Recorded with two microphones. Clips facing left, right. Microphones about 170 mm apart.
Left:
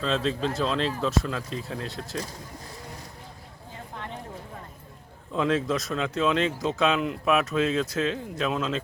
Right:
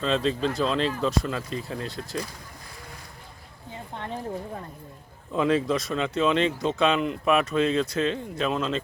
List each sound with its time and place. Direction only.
0.0 s speech: centre (ahead or behind)
3.9 s a sound: 30° right (ahead or behind)
5.3 s speech: centre (ahead or behind)